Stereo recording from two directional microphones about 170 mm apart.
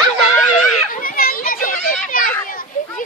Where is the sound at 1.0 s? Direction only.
55° left (ahead or behind).